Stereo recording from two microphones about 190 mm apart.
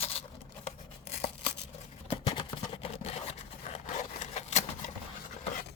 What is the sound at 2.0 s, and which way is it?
Scrape, 25° left (ahead or behind).